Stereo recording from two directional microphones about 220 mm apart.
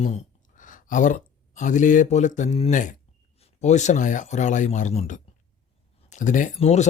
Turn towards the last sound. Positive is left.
turn(degrees=30)  # may be behind; listen again after turning